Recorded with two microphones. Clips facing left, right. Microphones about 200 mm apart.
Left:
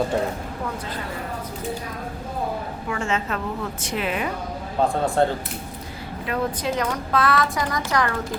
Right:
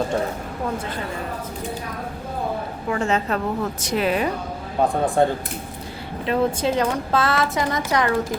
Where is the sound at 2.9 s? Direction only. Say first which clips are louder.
Right 4 dB; 35° right (ahead or behind).